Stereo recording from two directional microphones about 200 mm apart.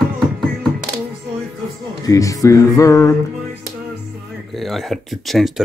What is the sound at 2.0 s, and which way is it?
Music, 15° left (ahead or behind).